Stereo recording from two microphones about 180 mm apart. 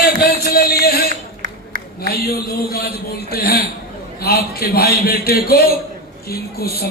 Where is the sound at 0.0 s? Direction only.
60° left (ahead or behind).